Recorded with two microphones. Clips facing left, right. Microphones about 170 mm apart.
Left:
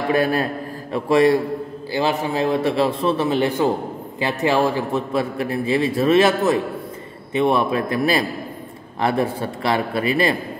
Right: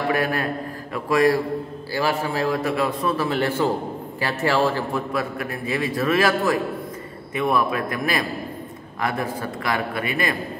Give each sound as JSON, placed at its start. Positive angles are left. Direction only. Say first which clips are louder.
{"t": 0.1, "sound": "a man's voice", "louder": "left 8 dB", "side_deg": 30}